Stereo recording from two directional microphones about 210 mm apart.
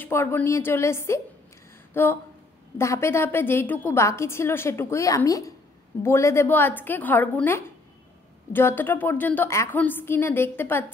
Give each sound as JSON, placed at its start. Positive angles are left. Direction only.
{"t": 0.0, "sound": "a woman's voice", "side_deg": 10}